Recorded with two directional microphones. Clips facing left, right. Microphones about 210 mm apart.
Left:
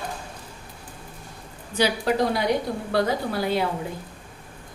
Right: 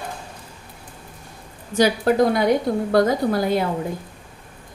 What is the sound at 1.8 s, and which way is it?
A woman's voice, 50° right (ahead or behind).